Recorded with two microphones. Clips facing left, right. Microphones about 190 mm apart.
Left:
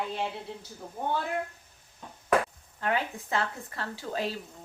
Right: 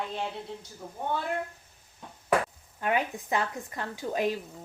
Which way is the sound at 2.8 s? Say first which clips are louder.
Right 2 dB; 15° right (ahead or behind).